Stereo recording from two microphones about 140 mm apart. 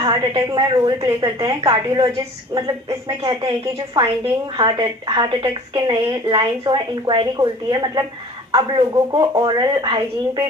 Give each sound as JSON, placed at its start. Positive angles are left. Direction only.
{"t": 0.0, "sound": "a woman's voice", "side_deg": -30}